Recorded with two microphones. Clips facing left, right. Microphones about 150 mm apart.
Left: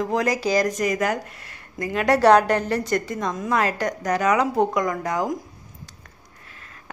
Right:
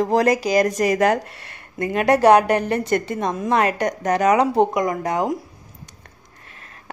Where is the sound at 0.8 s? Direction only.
70° right (ahead or behind).